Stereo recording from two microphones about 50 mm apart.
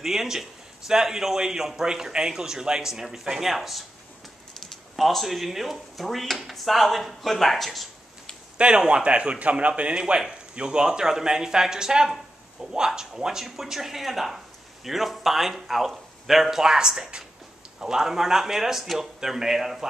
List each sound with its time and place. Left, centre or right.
0.0 s speech: centre
8.5 s speech: centre